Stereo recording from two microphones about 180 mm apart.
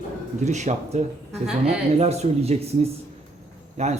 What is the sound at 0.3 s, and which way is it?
A man's voice, 40° right (ahead or behind).